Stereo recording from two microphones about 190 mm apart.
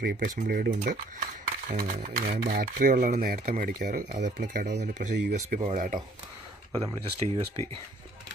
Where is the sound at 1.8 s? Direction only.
40° right (ahead or behind).